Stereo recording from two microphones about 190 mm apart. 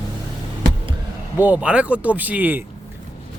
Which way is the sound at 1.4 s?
10° right (ahead or behind).